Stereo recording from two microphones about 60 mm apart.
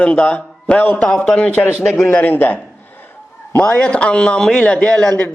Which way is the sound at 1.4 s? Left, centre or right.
Left.